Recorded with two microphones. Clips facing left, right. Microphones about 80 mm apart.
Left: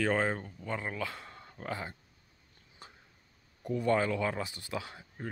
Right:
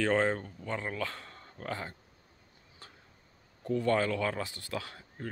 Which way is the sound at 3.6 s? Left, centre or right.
Centre.